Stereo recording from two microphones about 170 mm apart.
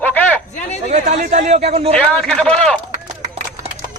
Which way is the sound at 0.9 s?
45° right (ahead or behind).